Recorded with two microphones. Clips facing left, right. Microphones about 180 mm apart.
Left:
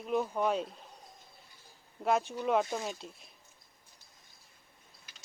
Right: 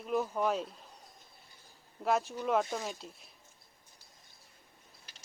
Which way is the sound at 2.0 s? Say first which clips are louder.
Left 1 dB; centre (ahead or behind).